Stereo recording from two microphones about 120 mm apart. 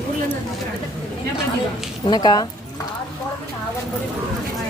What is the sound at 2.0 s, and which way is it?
Speech, 35° left (ahead or behind).